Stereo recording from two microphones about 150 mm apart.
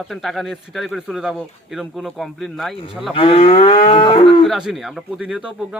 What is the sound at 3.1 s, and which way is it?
Cattle, 40° left (ahead or behind).